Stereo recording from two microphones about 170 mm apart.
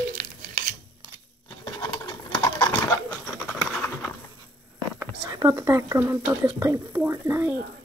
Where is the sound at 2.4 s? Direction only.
10° left (ahead or behind).